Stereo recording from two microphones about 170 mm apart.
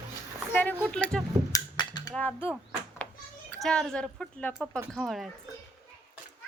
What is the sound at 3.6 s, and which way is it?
A woman's voice, 5° left (ahead or behind).